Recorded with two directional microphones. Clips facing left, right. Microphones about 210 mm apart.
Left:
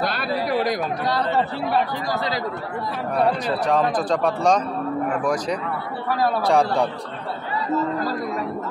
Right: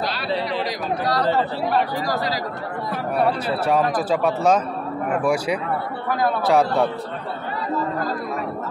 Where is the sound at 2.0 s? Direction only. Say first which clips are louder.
Right 1 dB; 25° left (ahead or behind).